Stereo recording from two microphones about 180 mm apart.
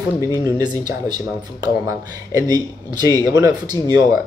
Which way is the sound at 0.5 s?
20° right (ahead or behind).